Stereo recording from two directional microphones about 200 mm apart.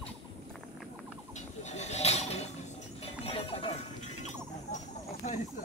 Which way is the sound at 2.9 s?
30° left (ahead or behind).